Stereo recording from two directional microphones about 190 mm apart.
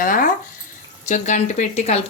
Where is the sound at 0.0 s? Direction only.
45° left (ahead or behind).